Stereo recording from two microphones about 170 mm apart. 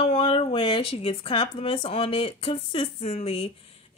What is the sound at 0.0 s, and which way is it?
A woman's voice, 30° left (ahead or behind).